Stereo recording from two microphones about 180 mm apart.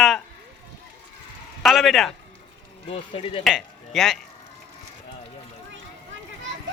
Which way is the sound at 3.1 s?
30° left (ahead or behind).